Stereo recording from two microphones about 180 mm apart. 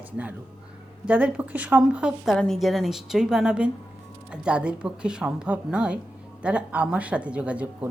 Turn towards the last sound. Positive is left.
turn(degrees=-5)  # may be behind; listen again after turning